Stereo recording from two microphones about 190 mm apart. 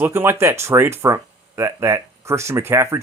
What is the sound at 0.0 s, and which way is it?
Speech, 15° right (ahead or behind).